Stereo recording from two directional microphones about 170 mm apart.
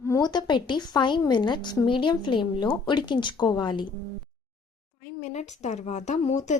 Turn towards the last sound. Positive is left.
turn(degrees=45)  # may be behind; listen again after turning